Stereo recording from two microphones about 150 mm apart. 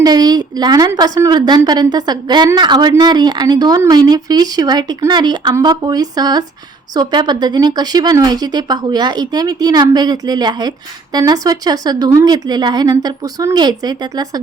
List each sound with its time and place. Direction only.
0.0 s speech: 25° right (ahead or behind)